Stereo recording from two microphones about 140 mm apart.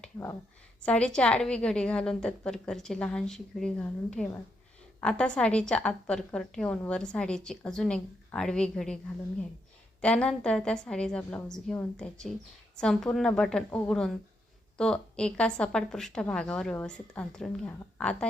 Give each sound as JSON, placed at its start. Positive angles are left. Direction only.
{"t": 0.8, "sound": "a woman's voice", "side_deg": 10}
{"t": 10.0, "sound": "a woman's voice", "side_deg": 10}